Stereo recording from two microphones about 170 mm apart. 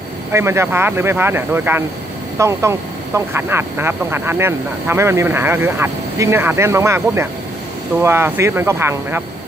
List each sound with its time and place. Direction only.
0.3 s speech: 15° right (ahead or behind)